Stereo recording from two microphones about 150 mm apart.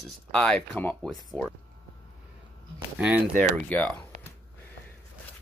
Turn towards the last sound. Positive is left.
turn(degrees=10)  # may be behind; listen again after turning